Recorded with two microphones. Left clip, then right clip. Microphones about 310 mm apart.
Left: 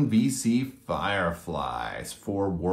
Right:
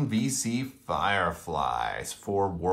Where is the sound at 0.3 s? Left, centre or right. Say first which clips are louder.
Left 4 dB; right.